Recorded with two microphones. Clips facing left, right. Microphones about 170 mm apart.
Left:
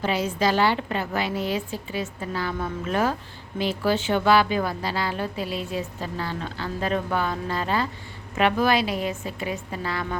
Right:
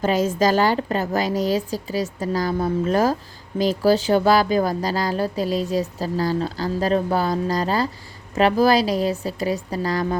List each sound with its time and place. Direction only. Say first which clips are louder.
0.0 s speech: right 5 dB; 45° right (ahead or behind)